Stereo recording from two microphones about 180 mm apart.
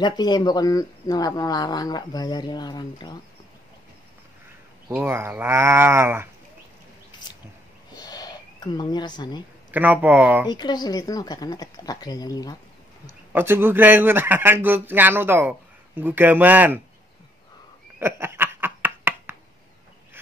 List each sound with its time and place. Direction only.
0.0 s speech: 20° left (ahead or behind)
4.8 s fowl: 10° right (ahead or behind)
7.9 s a sound: 20° left (ahead or behind)
9.7 s fowl: 10° right (ahead or behind)
10.5 s speech: 25° left (ahead or behind)
13.3 s fowl: 10° right (ahead or behind)
17.9 s a sound: 10° right (ahead or behind)